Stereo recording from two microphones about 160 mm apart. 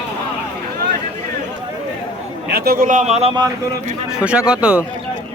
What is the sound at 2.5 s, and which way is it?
Speech, 75° right (ahead or behind).